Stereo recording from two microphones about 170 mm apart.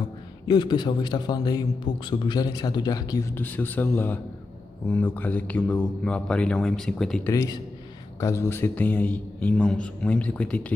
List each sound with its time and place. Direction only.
0.5 s a man's voice: 25° left (ahead or behind)
3.3 s a man's voice: 10° left (ahead or behind)
7.2 s a man's voice: 15° left (ahead or behind)